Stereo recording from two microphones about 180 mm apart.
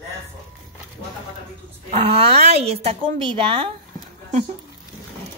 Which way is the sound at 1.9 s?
35° right (ahead or behind).